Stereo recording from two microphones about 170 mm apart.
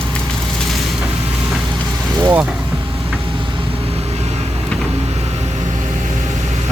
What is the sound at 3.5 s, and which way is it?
Vehicle, 35° right (ahead or behind).